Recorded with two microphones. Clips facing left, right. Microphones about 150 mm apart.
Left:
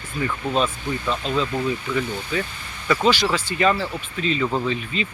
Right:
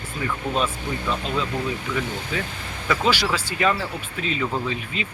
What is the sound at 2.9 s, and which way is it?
Speech, 10° right (ahead or behind).